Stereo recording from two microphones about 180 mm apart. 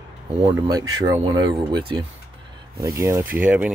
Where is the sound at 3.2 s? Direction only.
50° right (ahead or behind).